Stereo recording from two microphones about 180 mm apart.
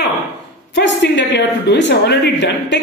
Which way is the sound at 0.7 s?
75° left (ahead or behind).